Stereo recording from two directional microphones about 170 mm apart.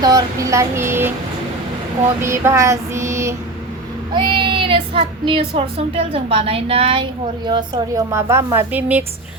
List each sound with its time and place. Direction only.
0.0 s child singing: 20° right (ahead or behind)
2.2 s child singing: 15° right (ahead or behind)
4.1 s a child's voice: 30° right (ahead or behind)
8.5 s child singing: 10° right (ahead or behind)